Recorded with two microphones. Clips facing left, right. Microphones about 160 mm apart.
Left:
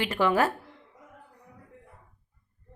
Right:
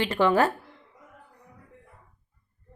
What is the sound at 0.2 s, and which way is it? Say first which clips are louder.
Speech: right 3 dB; 25° right (ahead or behind).